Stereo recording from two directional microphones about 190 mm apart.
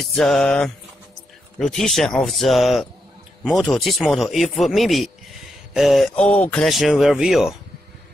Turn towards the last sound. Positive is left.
turn(degrees=-5)  # may be behind; listen again after turning